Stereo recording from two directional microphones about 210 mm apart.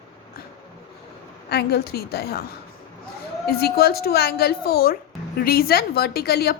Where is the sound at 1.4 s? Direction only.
50° left (ahead or behind).